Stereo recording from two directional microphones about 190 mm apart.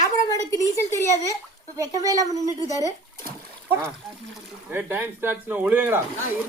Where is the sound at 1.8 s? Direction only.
20° right (ahead or behind).